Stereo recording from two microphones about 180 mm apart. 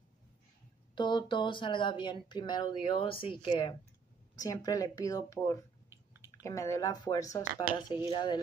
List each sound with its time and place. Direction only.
0.9 s speech: 25° left (ahead or behind)